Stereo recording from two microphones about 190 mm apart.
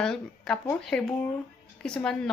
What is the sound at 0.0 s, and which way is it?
A woman's voice, 5° left (ahead or behind).